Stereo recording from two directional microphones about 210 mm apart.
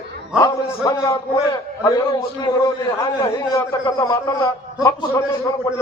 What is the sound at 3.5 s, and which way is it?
A man's voice, 15° left (ahead or behind).